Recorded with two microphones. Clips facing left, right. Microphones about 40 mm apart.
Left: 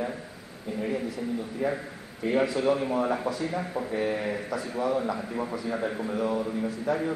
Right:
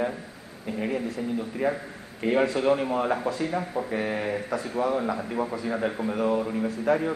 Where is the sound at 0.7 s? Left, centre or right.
Right.